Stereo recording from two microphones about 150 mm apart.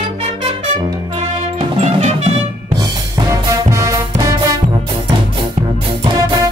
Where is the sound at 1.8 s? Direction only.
45° right (ahead or behind).